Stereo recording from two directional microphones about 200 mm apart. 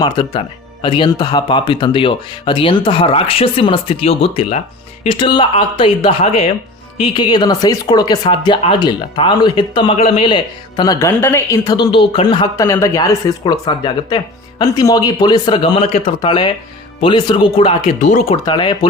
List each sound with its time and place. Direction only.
0.0 s speech: 25° left (ahead or behind)
18.4 s speech: 25° left (ahead or behind)